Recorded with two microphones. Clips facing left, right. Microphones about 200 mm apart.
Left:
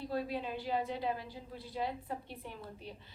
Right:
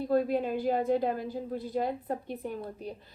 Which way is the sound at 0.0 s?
50° right (ahead or behind).